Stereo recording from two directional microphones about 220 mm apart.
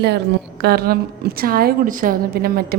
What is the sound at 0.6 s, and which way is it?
A woman's voice, 45° right (ahead or behind).